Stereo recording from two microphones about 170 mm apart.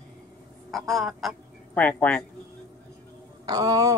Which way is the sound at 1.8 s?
10° left (ahead or behind).